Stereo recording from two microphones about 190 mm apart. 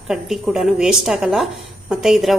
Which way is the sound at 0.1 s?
Centre (ahead or behind).